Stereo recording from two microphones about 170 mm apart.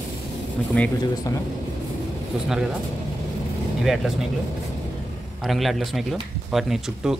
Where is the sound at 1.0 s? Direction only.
20° left (ahead or behind).